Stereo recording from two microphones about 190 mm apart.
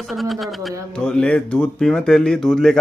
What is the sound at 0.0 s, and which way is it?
Speech, centre (ahead or behind).